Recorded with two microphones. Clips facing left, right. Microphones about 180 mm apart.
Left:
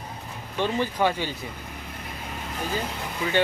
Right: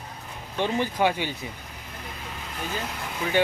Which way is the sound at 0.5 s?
15° right (ahead or behind).